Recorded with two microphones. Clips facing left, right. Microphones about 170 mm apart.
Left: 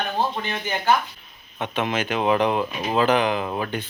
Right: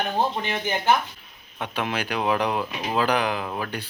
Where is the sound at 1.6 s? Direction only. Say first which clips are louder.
Left 3 dB; centre (ahead or behind).